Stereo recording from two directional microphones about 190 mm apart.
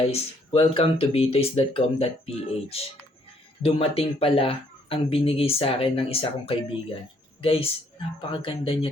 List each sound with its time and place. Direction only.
0.1 s speech: 30° left (ahead or behind)